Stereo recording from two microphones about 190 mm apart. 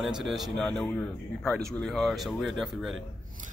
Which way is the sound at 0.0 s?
Centre (ahead or behind).